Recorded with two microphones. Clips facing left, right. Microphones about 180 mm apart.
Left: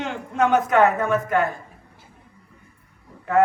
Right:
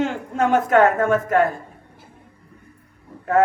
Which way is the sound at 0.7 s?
35° right (ahead or behind).